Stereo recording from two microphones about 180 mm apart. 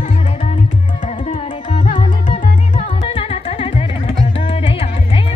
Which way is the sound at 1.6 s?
45° left (ahead or behind).